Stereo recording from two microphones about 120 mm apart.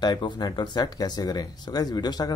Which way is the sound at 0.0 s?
35° left (ahead or behind).